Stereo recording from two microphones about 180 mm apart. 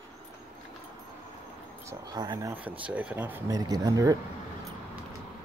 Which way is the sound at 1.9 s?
20° right (ahead or behind).